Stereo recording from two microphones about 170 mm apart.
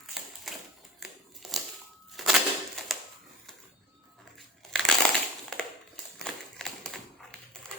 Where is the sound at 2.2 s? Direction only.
Centre (ahead or behind).